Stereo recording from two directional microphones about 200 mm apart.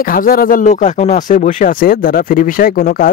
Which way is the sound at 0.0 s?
45° left (ahead or behind).